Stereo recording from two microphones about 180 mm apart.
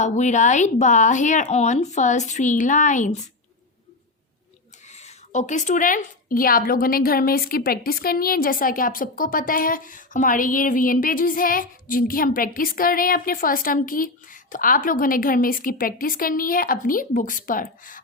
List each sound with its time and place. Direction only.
0.0 s speech: 40° left (ahead or behind)
4.9 s speech: 40° left (ahead or behind)